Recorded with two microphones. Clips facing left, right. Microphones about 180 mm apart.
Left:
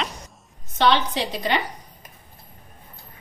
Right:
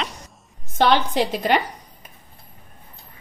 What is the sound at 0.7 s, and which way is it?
Speech, 50° right (ahead or behind).